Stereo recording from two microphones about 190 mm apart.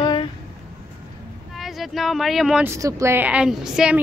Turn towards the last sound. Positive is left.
turn(degrees=-5)  # may be behind; listen again after turning